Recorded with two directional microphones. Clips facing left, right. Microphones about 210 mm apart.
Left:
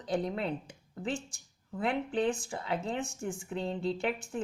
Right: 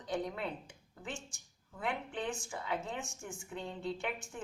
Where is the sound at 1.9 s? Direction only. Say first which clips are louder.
Left 8 dB; 35° left (ahead or behind).